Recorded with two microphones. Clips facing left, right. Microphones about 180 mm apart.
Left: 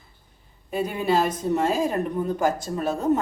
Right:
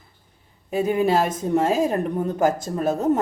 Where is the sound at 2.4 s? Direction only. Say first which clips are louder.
Right 6 dB; 45° right (ahead or behind).